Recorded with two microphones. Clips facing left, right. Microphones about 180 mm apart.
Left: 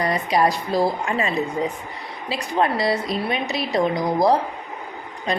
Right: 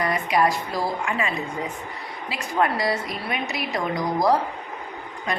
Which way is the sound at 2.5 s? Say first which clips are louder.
Left 2 dB; 25° left (ahead or behind).